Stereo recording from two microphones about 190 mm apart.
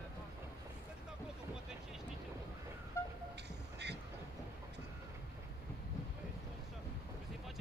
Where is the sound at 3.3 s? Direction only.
65° right (ahead or behind).